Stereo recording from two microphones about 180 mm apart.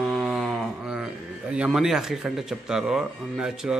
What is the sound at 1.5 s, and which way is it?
Speech, 5° right (ahead or behind).